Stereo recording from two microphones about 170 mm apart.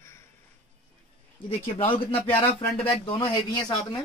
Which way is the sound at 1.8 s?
30° left (ahead or behind).